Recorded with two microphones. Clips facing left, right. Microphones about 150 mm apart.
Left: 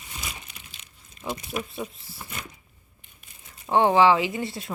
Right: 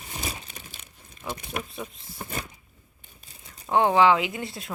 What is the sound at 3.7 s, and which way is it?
A woman's voice, centre (ahead or behind).